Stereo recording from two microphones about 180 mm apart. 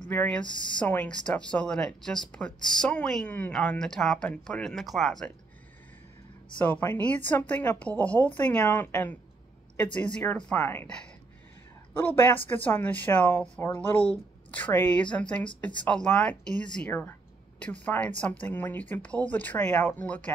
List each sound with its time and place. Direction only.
0.1 s speech: 10° left (ahead or behind)
6.6 s speech: 10° left (ahead or behind)